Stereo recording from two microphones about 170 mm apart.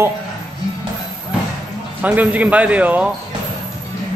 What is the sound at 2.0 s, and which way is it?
A man's voice, 10° right (ahead or behind).